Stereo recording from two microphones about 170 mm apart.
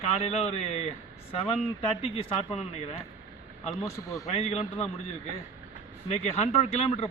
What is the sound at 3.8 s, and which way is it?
Speech, 20° left (ahead or behind).